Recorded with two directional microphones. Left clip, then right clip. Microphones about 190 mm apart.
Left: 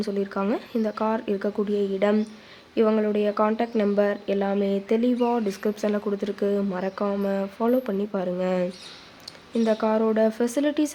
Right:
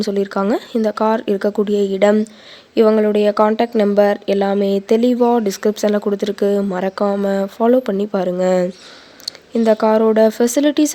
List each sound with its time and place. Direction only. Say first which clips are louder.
0.0 s speech: right 9 dB; 40° right (ahead or behind)